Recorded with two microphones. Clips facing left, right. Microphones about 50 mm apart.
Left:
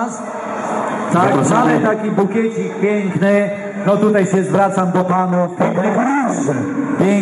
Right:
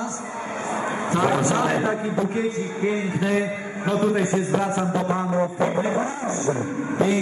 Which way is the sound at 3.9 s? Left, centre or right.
Centre.